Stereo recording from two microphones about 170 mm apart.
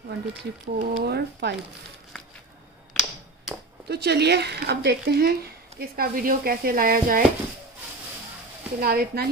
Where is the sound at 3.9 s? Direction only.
75° right (ahead or behind); by 7.2 s 55° right (ahead or behind).